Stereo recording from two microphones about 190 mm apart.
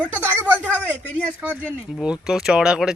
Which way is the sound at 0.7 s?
10° left (ahead or behind).